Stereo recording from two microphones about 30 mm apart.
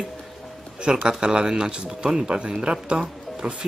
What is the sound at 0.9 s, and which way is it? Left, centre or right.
Speech, right.